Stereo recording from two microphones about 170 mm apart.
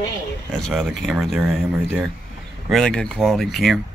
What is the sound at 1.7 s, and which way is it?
Speech, 10° right (ahead or behind).